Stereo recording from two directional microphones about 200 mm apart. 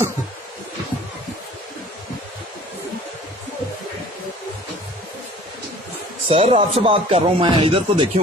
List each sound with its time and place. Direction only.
6.2 s speech: 30° right (ahead or behind)